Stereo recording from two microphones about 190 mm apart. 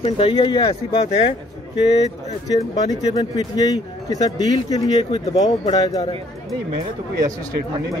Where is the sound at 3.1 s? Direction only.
20° left (ahead or behind).